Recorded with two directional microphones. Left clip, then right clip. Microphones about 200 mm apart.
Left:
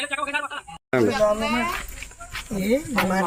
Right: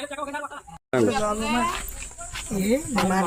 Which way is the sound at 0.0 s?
60° right (ahead or behind).